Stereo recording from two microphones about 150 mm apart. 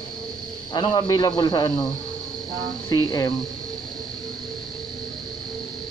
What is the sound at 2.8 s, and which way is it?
Speech, 25° left (ahead or behind).